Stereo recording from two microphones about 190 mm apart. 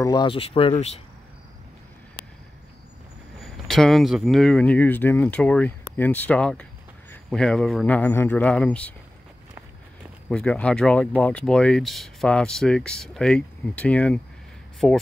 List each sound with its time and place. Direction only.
0.0 s speech: 20° left (ahead or behind)
3.3 s speech: centre (ahead or behind)
10.3 s speech: 5° left (ahead or behind)